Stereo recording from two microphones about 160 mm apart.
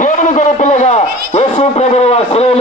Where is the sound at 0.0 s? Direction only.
50° left (ahead or behind).